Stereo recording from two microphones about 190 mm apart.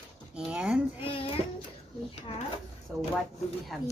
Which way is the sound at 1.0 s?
30° left (ahead or behind).